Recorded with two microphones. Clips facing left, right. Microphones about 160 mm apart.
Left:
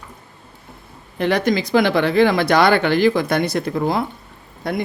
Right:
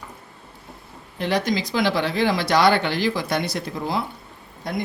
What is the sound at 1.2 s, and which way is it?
Speech, 55° left (ahead or behind).